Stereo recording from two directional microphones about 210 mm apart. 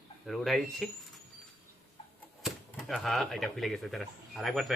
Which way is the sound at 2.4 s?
Centre (ahead or behind).